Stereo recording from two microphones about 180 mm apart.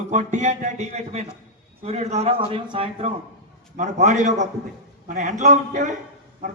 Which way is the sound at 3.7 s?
40° right (ahead or behind).